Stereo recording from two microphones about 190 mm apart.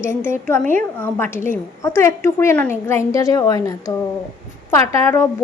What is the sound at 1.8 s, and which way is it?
A woman's voice, 15° left (ahead or behind).